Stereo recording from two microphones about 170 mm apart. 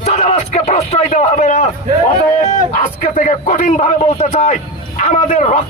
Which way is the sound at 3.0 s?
50° left (ahead or behind).